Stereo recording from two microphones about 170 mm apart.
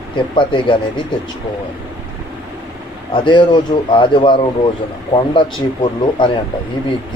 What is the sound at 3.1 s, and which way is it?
Speech, 30° left (ahead or behind).